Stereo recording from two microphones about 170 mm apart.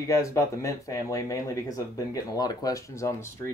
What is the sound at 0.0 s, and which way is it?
Speech, 20° left (ahead or behind).